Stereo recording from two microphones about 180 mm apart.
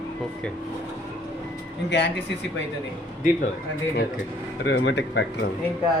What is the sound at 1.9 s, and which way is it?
Speech, 75° left (ahead or behind).